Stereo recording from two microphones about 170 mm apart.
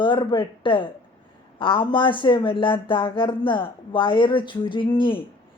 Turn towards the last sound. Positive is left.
turn(degrees=30)  # may be behind; listen again after turning